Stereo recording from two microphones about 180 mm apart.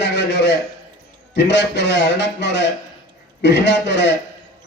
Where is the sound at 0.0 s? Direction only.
75° left (ahead or behind).